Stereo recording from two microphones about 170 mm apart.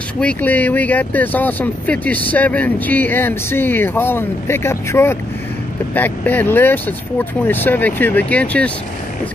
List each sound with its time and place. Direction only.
0.2 s speech: 10° left (ahead or behind)